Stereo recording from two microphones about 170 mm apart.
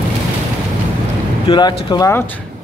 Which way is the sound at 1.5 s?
25° left (ahead or behind).